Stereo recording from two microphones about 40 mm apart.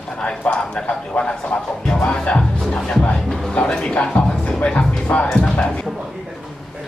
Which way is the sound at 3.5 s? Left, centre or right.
Left.